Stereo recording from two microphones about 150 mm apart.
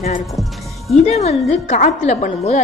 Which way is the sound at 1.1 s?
45° left (ahead or behind).